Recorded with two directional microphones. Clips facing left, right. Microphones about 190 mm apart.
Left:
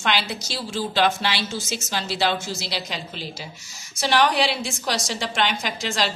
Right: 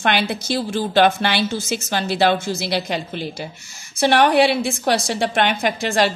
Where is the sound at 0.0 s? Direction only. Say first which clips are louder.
Right 5 dB; 55° right (ahead or behind).